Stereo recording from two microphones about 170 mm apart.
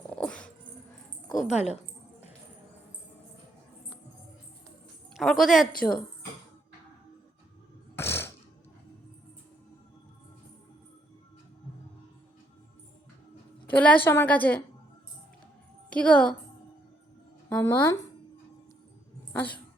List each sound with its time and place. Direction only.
0.1 s dog: 5° left (ahead or behind)
1.3 s speech: 45° left (ahead or behind)
5.1 s a woman's voice: centre (ahead or behind)
7.9 s a sound: 15° left (ahead or behind)
13.7 s a woman's voice: 10° left (ahead or behind)
15.9 s a woman's voice: 10° left (ahead or behind)
17.5 s a woman's voice: 15° left (ahead or behind)
19.3 s speech: 10° left (ahead or behind)